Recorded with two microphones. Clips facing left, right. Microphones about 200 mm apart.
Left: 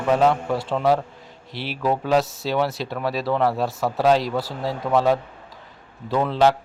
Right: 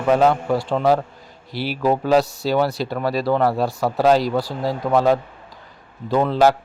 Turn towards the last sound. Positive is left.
turn(degrees=-5)  # may be behind; listen again after turning